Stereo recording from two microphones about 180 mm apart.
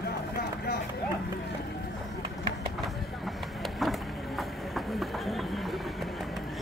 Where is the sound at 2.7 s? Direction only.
Centre (ahead or behind).